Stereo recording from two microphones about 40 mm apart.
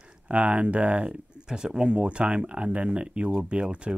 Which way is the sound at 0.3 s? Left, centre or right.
Right.